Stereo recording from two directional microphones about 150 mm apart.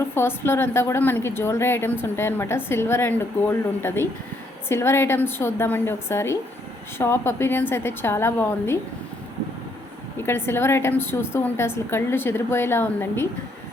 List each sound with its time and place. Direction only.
0.1 s a woman's voice: 15° left (ahead or behind)
10.2 s a woman's voice: 15° left (ahead or behind)